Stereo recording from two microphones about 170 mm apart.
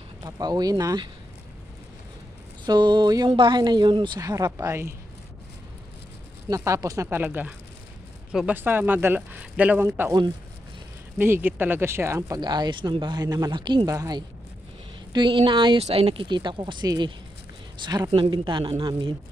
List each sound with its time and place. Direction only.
0.2 s speech: 25° right (ahead or behind)
2.6 s speech: 25° right (ahead or behind)
6.5 s speech: 20° right (ahead or behind)
11.1 s speech: 10° right (ahead or behind); by 19.1 s 30° right (ahead or behind)